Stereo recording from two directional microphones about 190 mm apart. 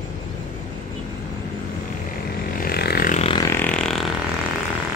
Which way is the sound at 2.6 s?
55° left (ahead or behind).